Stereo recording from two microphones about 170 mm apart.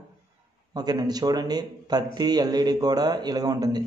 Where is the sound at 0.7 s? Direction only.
25° right (ahead or behind).